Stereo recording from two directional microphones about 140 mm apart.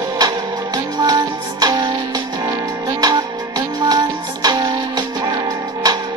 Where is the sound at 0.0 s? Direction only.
30° right (ahead or behind).